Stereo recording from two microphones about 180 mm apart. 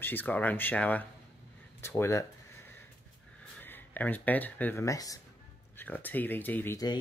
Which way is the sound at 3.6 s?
10° left (ahead or behind).